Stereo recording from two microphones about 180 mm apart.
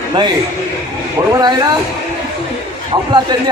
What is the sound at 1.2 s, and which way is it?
Speech, 20° right (ahead or behind).